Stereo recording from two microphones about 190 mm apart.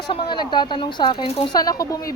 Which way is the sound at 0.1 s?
25° left (ahead or behind).